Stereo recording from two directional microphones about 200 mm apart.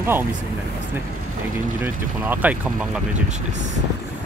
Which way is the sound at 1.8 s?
10° right (ahead or behind).